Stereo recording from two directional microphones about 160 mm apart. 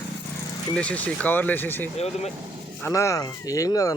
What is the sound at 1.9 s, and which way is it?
Speech, 40° left (ahead or behind).